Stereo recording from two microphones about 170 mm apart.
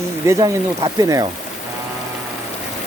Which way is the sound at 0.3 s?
20° right (ahead or behind).